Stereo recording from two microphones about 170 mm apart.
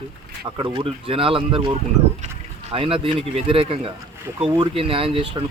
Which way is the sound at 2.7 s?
35° right (ahead or behind).